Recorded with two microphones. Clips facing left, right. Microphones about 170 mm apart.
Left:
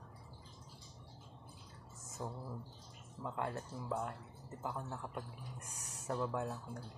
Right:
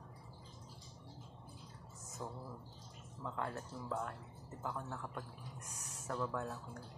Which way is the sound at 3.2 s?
15° left (ahead or behind).